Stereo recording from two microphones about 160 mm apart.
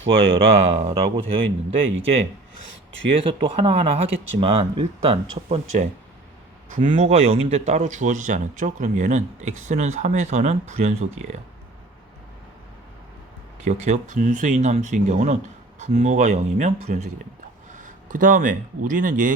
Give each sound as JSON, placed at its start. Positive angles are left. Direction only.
{"t": 0.6, "sound": "speech", "side_deg": -40}
{"t": 3.1, "sound": "speech", "side_deg": -35}
{"t": 6.7, "sound": "speech", "side_deg": -55}
{"t": 7.1, "sound": "a man's voice", "side_deg": -35}
{"t": 13.7, "sound": "a man's voice", "side_deg": -45}